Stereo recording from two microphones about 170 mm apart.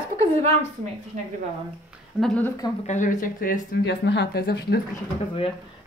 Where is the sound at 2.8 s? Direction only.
45° left (ahead or behind).